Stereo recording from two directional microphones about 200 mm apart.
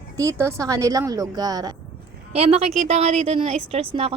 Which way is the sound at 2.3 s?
30° right (ahead or behind).